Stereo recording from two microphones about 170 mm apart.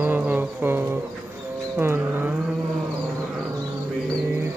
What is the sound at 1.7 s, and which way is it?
Bird, 10° right (ahead or behind).